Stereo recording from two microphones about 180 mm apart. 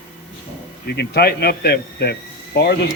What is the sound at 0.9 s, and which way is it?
Speech, 65° left (ahead or behind).